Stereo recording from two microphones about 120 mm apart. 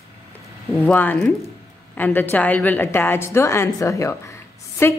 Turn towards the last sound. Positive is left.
turn(degrees=20)  # may be behind; listen again after turning